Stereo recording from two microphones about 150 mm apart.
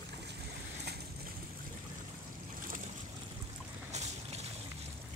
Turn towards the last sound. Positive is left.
turn(degrees=-45)  # may be behind; listen again after turning